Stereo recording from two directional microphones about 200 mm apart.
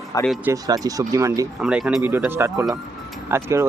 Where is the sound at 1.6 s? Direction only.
5° right (ahead or behind).